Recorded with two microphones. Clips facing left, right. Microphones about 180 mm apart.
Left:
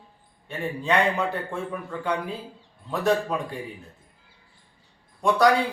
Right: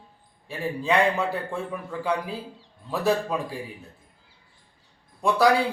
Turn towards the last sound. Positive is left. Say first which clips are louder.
# left 1 dB
turn(degrees=-5)  # may be behind; listen again after turning